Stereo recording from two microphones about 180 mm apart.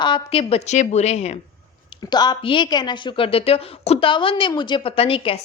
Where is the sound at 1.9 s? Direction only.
25° left (ahead or behind).